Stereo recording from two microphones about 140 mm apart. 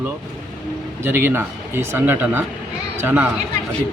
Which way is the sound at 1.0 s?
15° right (ahead or behind).